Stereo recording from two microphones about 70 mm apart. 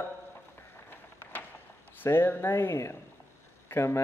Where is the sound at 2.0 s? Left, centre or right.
Left.